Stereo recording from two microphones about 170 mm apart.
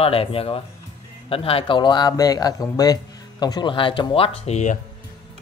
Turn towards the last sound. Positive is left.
turn(degrees=40)  # may be behind; listen again after turning